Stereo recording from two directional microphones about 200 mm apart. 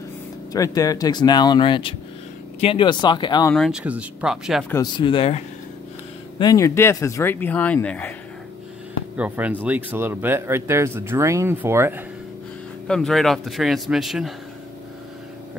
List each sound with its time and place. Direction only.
0.5 s speech: 15° left (ahead or behind)
3.5 s a man's voice: centre (ahead or behind)
4.9 s speech: 25° left (ahead or behind)
6.4 s speech: 15° left (ahead or behind)
9.1 s a man's voice: 10° right (ahead or behind)
12.8 s a man's voice: centre (ahead or behind)